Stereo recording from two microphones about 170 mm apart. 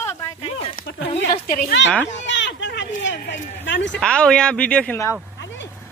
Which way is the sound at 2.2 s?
90° left.